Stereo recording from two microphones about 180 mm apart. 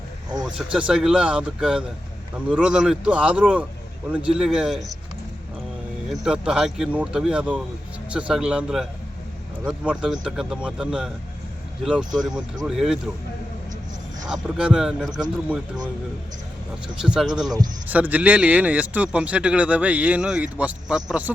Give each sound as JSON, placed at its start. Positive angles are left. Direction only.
{"t": 0.4, "sound": "a man's voice", "side_deg": -5}
{"t": 6.1, "sound": "speech", "side_deg": -5}
{"t": 12.2, "sound": "speech", "side_deg": -20}
{"t": 12.6, "sound": "speech", "side_deg": -5}
{"t": 14.4, "sound": "speech", "side_deg": -5}
{"t": 17.0, "sound": "a man's voice", "side_deg": -5}